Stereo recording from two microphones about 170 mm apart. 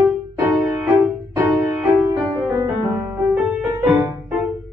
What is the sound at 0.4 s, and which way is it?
Music, 10° right (ahead or behind).